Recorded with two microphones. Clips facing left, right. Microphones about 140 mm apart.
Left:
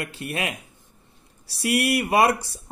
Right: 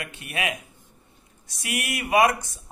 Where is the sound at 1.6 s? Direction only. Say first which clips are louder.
Left 8 dB; 35° left (ahead or behind).